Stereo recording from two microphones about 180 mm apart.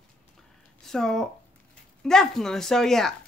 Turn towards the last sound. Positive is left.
turn(degrees=0)  # may be behind; listen again after turning